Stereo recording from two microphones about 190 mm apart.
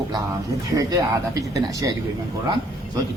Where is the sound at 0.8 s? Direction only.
20° right (ahead or behind).